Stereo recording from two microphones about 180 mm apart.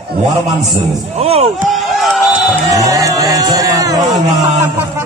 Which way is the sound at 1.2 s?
35° right (ahead or behind).